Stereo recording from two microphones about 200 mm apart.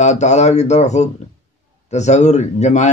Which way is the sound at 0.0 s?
35° left (ahead or behind).